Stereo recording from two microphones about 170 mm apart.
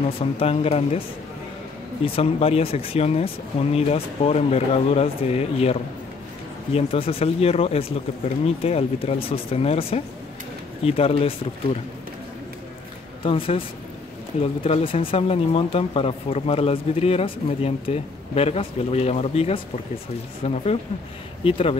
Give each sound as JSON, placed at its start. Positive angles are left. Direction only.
{"t": 0.2, "sound": "speech", "side_deg": 35}
{"t": 2.0, "sound": "speech", "side_deg": 35}
{"t": 13.2, "sound": "speech", "side_deg": 30}